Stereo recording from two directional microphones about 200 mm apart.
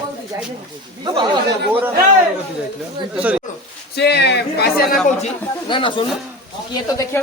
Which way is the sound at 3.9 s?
55° left (ahead or behind).